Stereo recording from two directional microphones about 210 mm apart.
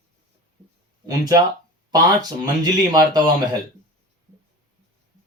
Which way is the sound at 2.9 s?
20° right (ahead or behind).